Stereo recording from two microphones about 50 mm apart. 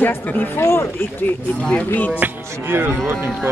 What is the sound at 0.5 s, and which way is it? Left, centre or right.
Speech, left.